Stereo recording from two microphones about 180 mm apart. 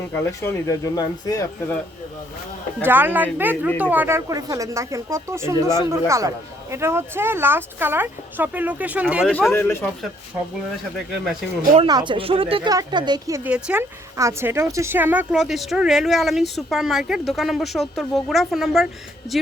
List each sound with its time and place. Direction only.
0.2 s speech: 15° left (ahead or behind)
2.8 s speech: 10° right (ahead or behind)
9.5 s speech: 15° left (ahead or behind)
11.9 s speech: 25° right (ahead or behind)
13.5 s a woman's voice: 5° right (ahead or behind)